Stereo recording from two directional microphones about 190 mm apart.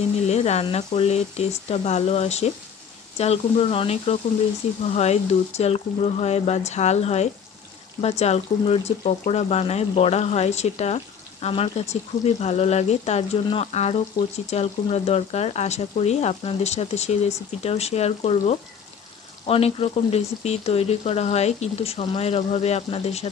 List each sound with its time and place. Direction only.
0.3 s speech: 35° left (ahead or behind)
14.2 s speech: 20° left (ahead or behind)
14.5 s speech: 35° left (ahead or behind)